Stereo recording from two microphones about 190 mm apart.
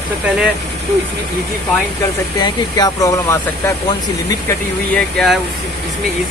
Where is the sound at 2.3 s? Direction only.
20° left (ahead or behind).